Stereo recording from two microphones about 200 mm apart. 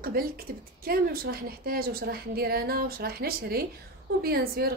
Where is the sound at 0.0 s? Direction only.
45° right (ahead or behind).